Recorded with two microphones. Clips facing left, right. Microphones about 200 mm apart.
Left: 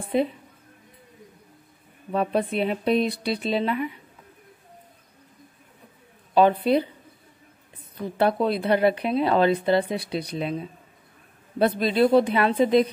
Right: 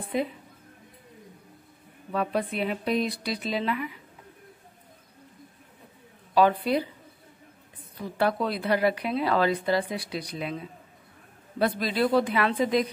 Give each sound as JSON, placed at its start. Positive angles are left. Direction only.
{"t": 0.1, "sound": "speech", "side_deg": 25}
{"t": 2.1, "sound": "speech", "side_deg": 25}
{"t": 6.3, "sound": "speech", "side_deg": 25}
{"t": 8.2, "sound": "speech", "side_deg": 25}